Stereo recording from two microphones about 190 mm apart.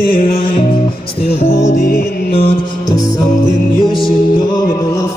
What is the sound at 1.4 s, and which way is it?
Music, 40° left (ahead or behind).